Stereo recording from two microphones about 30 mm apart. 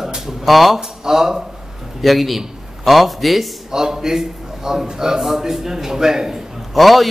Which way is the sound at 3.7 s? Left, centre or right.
Centre.